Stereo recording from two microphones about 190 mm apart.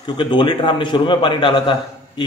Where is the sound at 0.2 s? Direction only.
25° left (ahead or behind).